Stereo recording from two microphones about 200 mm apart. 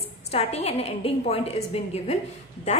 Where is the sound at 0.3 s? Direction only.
30° left (ahead or behind).